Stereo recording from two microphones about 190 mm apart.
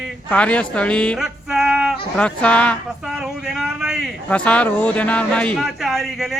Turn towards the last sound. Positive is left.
turn(degrees=0)  # may be behind; listen again after turning